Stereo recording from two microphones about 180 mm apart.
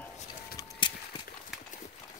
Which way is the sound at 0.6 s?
25° left (ahead or behind).